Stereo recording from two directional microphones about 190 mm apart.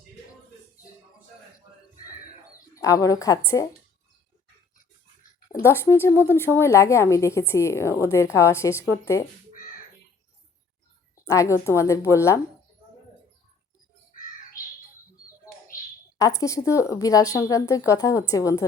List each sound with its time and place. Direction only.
2.7 s a woman's voice: 15° left (ahead or behind)
5.6 s a woman's voice: 15° left (ahead or behind)
11.3 s a woman's voice: 15° left (ahead or behind)
16.1 s a woman's voice: 15° left (ahead or behind)